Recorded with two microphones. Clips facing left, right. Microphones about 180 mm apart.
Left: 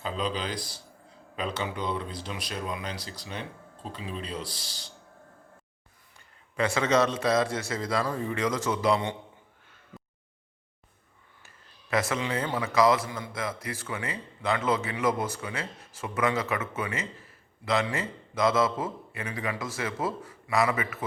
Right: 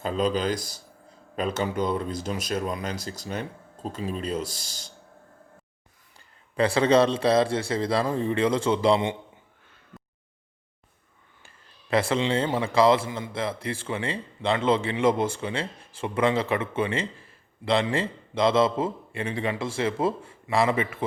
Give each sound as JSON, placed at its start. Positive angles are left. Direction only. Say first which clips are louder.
{"t": 0.0, "sound": "speech", "louder": "right 6 dB", "side_deg": -45}
{"t": 6.1, "sound": "a man's voice", "louder": "right 5 dB", "side_deg": -30}
{"t": 11.4, "sound": "a sound", "louder": "right 4 dB", "side_deg": -30}
{"t": 12.5, "sound": "a man's voice", "louder": "right 2 dB", "side_deg": -30}